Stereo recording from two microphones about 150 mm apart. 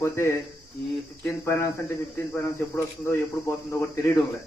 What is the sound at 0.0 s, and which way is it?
Speech, 15° left (ahead or behind).